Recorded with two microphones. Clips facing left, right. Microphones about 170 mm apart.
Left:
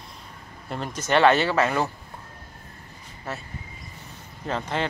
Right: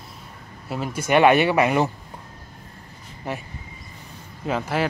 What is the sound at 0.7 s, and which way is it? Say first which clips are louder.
Speech: right 3 dB; 5° right (ahead or behind).